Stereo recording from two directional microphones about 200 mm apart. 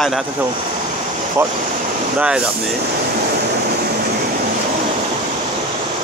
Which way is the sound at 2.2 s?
5° right (ahead or behind).